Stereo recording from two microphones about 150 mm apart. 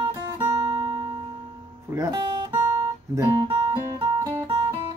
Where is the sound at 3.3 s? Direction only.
35° right (ahead or behind).